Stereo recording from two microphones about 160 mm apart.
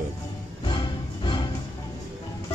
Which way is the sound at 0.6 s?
30° left (ahead or behind).